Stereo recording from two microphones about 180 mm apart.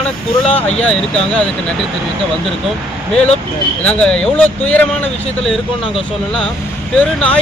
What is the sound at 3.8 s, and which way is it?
Speech, 5° left (ahead or behind).